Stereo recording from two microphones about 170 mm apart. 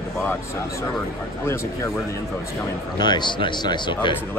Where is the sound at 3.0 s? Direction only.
25° left (ahead or behind).